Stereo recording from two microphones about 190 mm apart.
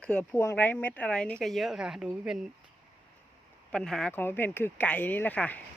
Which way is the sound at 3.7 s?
5° left (ahead or behind).